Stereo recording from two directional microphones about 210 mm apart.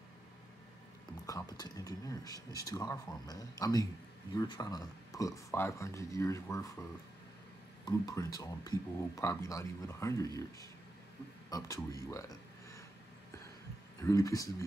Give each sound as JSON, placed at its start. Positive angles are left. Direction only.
{"t": 1.2, "sound": "speech", "side_deg": 15}
{"t": 14.0, "sound": "speech", "side_deg": 15}